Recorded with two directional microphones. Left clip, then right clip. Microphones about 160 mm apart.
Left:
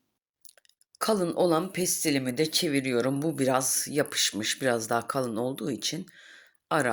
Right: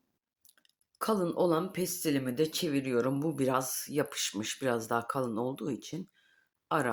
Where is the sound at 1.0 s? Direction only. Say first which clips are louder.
Left 4 dB; 10° left (ahead or behind).